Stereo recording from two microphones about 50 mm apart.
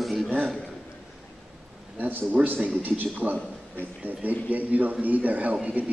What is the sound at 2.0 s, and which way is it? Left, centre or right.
A man's voice, right.